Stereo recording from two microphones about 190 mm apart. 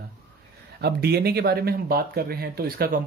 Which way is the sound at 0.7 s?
60° right (ahead or behind).